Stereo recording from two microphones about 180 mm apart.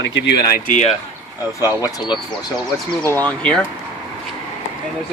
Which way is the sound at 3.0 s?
10° left (ahead or behind).